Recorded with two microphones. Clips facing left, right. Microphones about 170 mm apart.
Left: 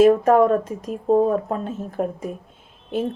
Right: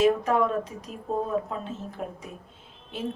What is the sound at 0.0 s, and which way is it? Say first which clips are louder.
A woman's voice: left 8 dB; 50° left (ahead or behind).